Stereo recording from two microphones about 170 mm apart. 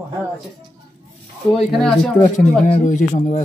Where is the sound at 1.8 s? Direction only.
Centre (ahead or behind).